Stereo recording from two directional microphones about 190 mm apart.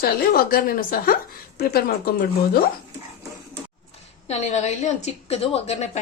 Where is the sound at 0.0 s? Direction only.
50° left (ahead or behind).